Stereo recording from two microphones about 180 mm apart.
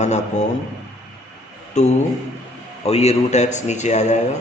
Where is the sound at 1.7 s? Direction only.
40° left (ahead or behind).